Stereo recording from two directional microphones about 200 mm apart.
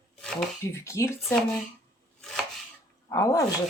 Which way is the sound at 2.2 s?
Centre (ahead or behind).